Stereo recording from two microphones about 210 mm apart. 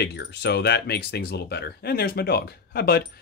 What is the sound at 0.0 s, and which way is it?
Speech, 50° left (ahead or behind).